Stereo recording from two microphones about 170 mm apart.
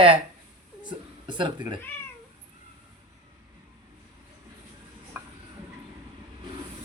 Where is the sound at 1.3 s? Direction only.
25° right (ahead or behind).